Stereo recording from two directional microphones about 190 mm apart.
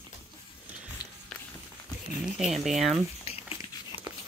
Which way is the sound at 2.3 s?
Centre (ahead or behind).